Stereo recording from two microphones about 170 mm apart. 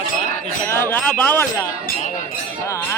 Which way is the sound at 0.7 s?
15° left (ahead or behind).